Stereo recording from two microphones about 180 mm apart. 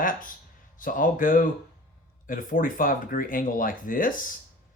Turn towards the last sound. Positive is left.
turn(degrees=50)  # may be behind; listen again after turning